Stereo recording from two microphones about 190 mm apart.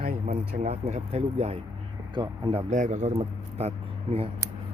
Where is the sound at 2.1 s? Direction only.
25° right (ahead or behind).